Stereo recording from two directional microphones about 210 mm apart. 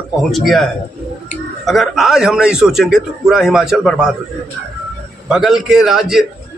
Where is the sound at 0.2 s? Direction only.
Centre (ahead or behind).